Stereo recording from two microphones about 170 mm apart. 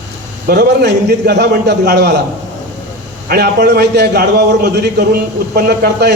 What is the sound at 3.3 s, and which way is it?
A man's voice, 65° right (ahead or behind).